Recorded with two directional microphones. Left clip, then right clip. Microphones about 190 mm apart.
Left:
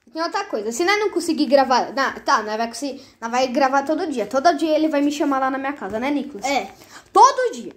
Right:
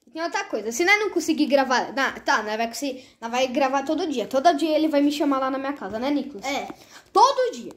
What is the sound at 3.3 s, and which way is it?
A woman's voice, 5° left (ahead or behind).